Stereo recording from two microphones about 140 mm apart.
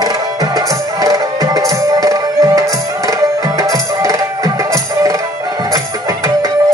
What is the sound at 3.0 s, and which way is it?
Tabla, 25° right (ahead or behind).